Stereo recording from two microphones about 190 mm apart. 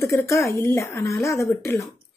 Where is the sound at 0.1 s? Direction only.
10° left (ahead or behind).